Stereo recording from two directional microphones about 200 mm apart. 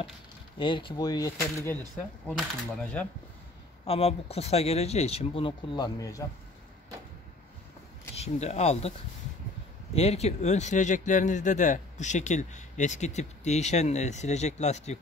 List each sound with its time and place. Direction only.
0.6 s speech: 25° left (ahead or behind); by 3.1 s 5° left (ahead or behind)
3.8 s speech: 30° left (ahead or behind)
8.2 s speech: 35° left (ahead or behind)
9.9 s speech: 30° left (ahead or behind)